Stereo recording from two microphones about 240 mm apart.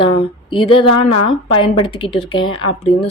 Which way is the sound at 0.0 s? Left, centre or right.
Left.